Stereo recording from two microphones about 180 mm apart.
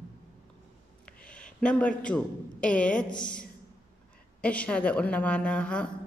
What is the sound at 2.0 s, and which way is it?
A woman's voice, 5° left (ahead or behind).